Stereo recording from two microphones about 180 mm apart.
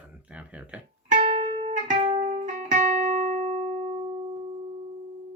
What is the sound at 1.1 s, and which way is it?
Music, 35° right (ahead or behind).